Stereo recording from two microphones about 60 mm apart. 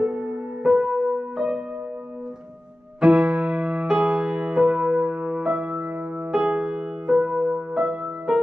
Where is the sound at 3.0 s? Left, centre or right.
Centre.